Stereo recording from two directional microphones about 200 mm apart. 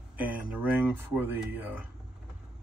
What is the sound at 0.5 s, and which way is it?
Speech, 10° right (ahead or behind).